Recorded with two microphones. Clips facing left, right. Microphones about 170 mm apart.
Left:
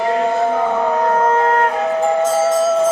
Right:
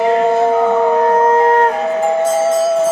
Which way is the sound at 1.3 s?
35° right (ahead or behind).